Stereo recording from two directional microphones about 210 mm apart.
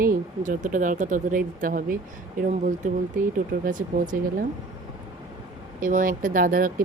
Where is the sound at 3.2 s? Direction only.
40° right (ahead or behind).